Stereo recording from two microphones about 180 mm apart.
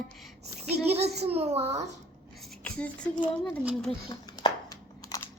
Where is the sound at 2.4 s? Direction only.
5° left (ahead or behind).